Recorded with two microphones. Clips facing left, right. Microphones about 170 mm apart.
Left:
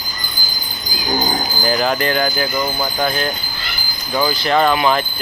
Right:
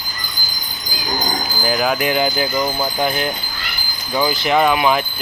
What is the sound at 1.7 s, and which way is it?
Speech, 5° right (ahead or behind).